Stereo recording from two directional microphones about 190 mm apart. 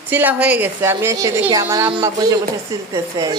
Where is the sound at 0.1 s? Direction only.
10° right (ahead or behind).